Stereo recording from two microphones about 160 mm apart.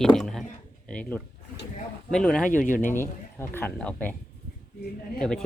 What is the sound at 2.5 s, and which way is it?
Speech, 55° left (ahead or behind).